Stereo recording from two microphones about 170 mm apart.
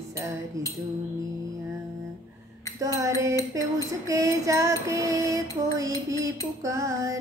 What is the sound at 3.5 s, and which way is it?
Female singing, 20° right (ahead or behind).